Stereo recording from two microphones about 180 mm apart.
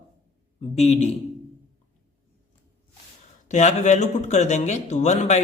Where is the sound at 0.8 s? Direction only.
35° left (ahead or behind).